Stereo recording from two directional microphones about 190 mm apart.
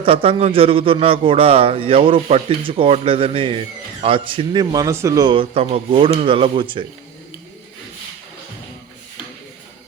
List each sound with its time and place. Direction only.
0.0 s a man's voice: 30° right (ahead or behind)